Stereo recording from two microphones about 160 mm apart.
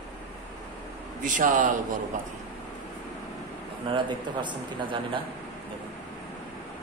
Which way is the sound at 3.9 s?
30° right (ahead or behind).